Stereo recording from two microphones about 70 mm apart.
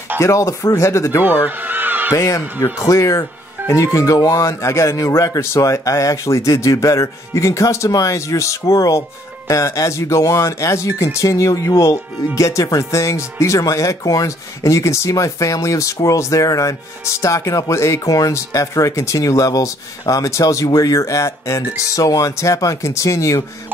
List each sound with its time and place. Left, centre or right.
0.2 s speech: left
1.2 s a sound: right
2.1 s speech: left